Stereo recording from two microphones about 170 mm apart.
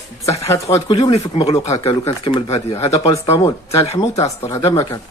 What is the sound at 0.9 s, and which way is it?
Speech, 35° left (ahead or behind).